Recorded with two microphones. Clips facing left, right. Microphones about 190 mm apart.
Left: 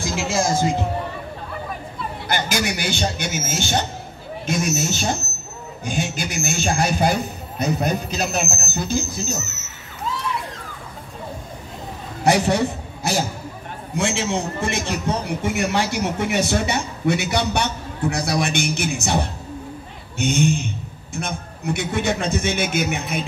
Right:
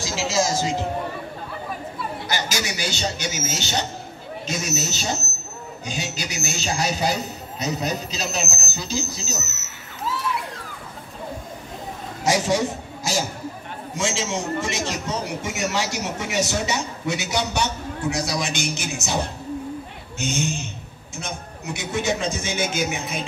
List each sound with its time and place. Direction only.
0.0 s a man's voice: 55° left (ahead or behind)
2.2 s a man's voice: 55° left (ahead or behind)
12.2 s a man's voice: 60° left (ahead or behind)
20.2 s a man's voice: 60° left (ahead or behind)